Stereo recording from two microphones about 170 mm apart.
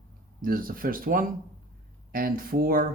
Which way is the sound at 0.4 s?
55° right (ahead or behind).